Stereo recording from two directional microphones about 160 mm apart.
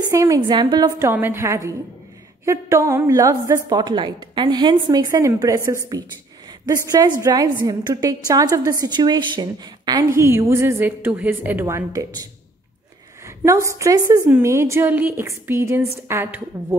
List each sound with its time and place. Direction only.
0.1 s a woman's voice: 20° right (ahead or behind)
13.4 s a woman's voice: 20° right (ahead or behind)